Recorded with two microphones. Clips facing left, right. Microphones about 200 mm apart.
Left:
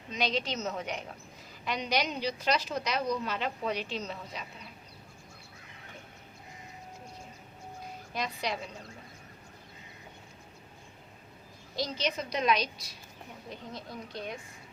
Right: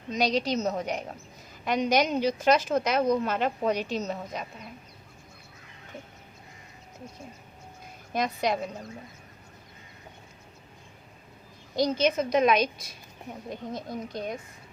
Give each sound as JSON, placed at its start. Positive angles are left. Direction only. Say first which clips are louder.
{"t": 0.1, "sound": "a woman's voice", "louder": "right 6 dB", "side_deg": -40}
{"t": 8.1, "sound": "a woman's voice", "louder": "right 7 dB", "side_deg": -45}
{"t": 11.8, "sound": "a woman's voice", "louder": "right 9 dB", "side_deg": -50}